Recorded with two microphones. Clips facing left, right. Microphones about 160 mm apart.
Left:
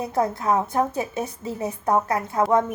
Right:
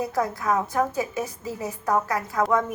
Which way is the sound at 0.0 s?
25° left (ahead or behind).